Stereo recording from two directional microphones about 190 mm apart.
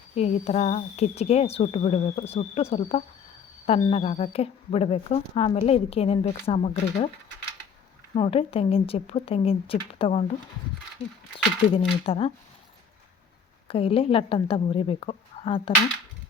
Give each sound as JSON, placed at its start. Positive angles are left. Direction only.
{"t": 0.2, "sound": "speech", "side_deg": 35}
{"t": 8.1, "sound": "speech", "side_deg": 30}
{"t": 11.7, "sound": "a woman's voice", "side_deg": 30}
{"t": 13.7, "sound": "a woman's voice", "side_deg": 30}